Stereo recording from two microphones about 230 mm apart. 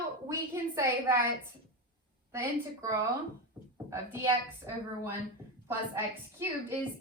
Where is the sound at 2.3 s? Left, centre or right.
Centre.